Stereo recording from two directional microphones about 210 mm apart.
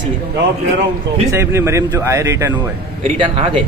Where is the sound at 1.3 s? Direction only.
15° right (ahead or behind).